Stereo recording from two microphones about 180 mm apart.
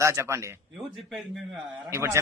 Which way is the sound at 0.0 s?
15° right (ahead or behind).